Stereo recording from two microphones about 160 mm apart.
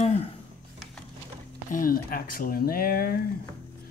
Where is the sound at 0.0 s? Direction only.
40° left (ahead or behind).